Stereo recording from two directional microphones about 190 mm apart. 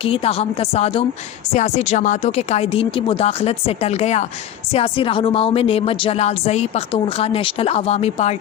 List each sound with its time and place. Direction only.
0.0 s speech: 30° left (ahead or behind)